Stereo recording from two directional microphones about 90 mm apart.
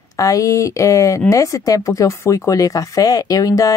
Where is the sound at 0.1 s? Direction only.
40° left (ahead or behind).